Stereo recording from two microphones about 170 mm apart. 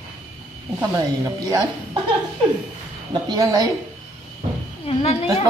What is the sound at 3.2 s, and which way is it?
Speech, 20° right (ahead or behind).